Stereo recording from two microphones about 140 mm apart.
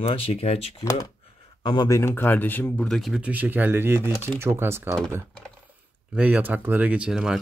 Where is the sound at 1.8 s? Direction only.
20° left (ahead or behind).